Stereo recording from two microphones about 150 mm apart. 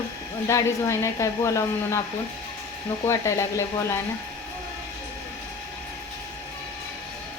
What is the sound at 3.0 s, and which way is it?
Speech, 20° left (ahead or behind).